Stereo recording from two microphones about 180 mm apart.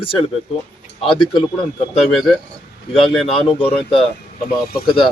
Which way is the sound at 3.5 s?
30° left (ahead or behind).